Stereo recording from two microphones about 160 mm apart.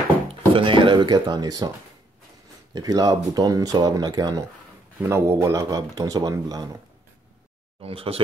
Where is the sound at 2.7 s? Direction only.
25° right (ahead or behind).